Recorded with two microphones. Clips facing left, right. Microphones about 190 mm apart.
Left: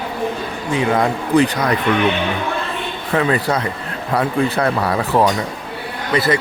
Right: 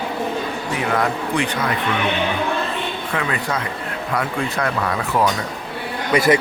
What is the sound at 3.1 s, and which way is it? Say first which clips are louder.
Speech: left 8 dB; 35° left (ahead or behind).